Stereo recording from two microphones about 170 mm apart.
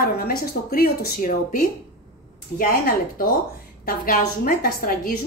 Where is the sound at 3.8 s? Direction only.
55° left (ahead or behind).